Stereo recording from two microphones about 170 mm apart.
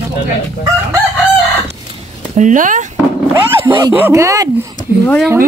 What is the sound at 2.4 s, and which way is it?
Speech, 50° right (ahead or behind).